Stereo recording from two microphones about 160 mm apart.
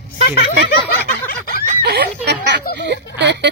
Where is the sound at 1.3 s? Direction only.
75° left (ahead or behind).